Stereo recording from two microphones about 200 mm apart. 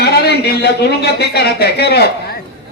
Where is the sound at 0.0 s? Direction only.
55° left (ahead or behind).